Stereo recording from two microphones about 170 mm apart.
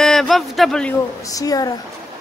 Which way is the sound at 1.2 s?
20° left (ahead or behind).